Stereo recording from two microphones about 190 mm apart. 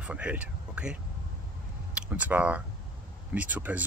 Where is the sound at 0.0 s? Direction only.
5° right (ahead or behind).